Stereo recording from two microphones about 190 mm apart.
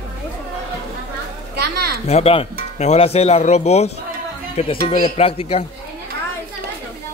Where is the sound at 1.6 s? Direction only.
55° right (ahead or behind).